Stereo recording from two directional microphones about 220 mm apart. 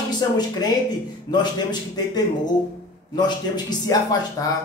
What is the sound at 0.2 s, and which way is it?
A man's voice, 15° left (ahead or behind).